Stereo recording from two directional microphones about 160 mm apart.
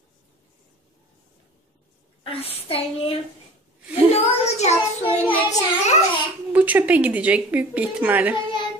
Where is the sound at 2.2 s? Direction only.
35° left (ahead or behind).